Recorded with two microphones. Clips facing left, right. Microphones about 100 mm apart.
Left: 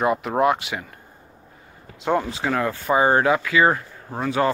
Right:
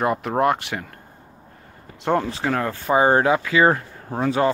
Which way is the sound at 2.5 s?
35° right (ahead or behind).